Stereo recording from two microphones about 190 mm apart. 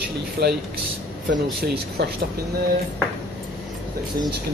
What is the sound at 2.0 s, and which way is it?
Speech, 60° right (ahead or behind).